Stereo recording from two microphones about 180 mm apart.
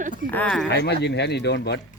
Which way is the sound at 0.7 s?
65° left (ahead or behind).